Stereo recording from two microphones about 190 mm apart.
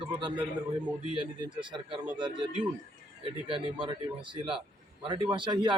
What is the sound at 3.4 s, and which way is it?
A man's voice, 30° right (ahead or behind).